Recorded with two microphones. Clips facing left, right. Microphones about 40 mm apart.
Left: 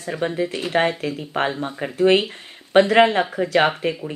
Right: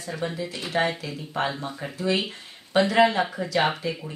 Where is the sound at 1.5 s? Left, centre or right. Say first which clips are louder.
Left 6 dB; left.